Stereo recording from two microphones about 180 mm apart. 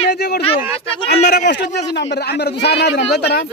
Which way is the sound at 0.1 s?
65° left (ahead or behind).